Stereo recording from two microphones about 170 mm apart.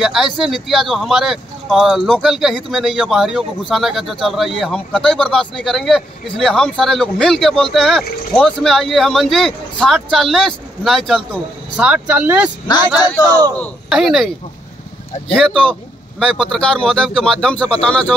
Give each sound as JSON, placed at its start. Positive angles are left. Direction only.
{"t": 0.0, "sound": "speech", "side_deg": 0}
{"t": 13.3, "sound": "speech", "side_deg": -20}
{"t": 13.9, "sound": "speech", "side_deg": 0}
{"t": 15.3, "sound": "speech", "side_deg": 5}